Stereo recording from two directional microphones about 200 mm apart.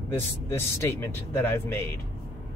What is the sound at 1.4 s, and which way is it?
Speech, 10° left (ahead or behind).